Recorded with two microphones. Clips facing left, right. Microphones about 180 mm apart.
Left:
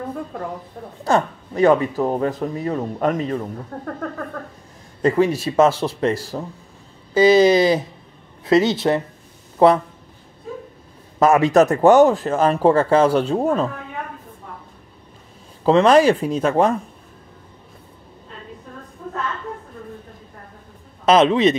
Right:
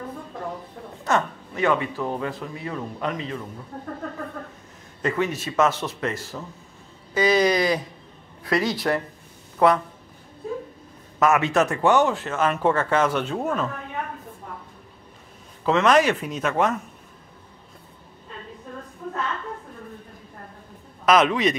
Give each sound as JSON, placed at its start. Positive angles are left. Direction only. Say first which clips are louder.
{"t": 1.0, "sound": "speech", "louder": "left 5 dB", "side_deg": 35}
{"t": 3.7, "sound": "a sound", "louder": "left 4 dB", "side_deg": 70}
{"t": 5.0, "sound": "speech", "louder": "left 8 dB", "side_deg": 35}
{"t": 11.1, "sound": "speech", "louder": "left 6 dB", "side_deg": 30}
{"t": 15.6, "sound": "speech", "louder": "left 6 dB", "side_deg": 30}
{"t": 21.0, "sound": "a man's voice", "louder": "left 5 dB", "side_deg": 30}